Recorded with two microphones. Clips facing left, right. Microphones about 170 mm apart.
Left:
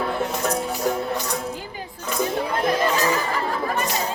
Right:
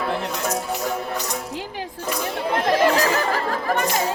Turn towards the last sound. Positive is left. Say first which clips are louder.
# right 4 dB
turn(degrees=-80)